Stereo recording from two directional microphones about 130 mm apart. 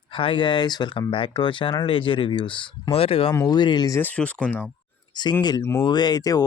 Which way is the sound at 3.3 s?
30° left (ahead or behind).